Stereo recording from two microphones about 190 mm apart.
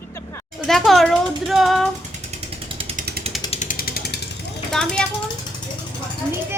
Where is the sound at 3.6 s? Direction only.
45° left (ahead or behind).